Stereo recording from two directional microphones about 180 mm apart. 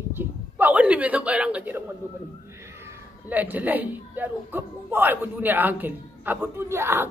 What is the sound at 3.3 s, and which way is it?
A man's voice, 10° right (ahead or behind).